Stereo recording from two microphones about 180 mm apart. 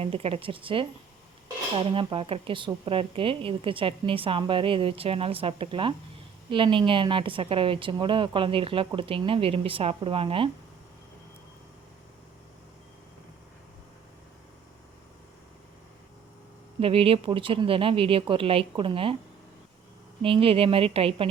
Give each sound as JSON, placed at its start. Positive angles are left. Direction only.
{"t": 0.0, "sound": "a woman's voice", "side_deg": -35}
{"t": 16.8, "sound": "speech", "side_deg": -30}
{"t": 20.2, "sound": "speech", "side_deg": -30}